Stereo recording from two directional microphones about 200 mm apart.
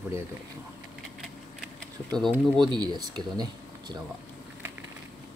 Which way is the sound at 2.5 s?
20° right (ahead or behind).